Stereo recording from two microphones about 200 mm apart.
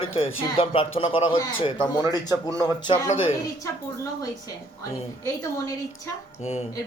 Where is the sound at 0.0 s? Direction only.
25° left (ahead or behind).